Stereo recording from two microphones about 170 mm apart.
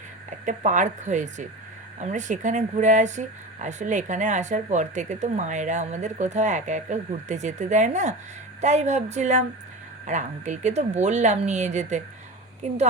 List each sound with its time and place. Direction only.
0.4 s speech: 45° right (ahead or behind)